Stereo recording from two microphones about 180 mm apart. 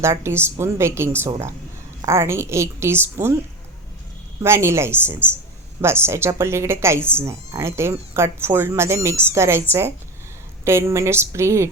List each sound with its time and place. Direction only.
0.0 s a woman's voice: 15° right (ahead or behind)
4.4 s a woman's voice: 15° right (ahead or behind)